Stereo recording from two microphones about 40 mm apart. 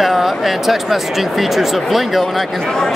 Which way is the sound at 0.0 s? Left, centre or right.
Centre.